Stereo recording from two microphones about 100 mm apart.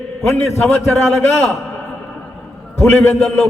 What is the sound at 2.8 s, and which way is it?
Speech, 20° left (ahead or behind).